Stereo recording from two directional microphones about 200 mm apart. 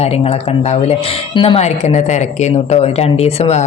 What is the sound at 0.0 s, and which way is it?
Speech, 30° left (ahead or behind).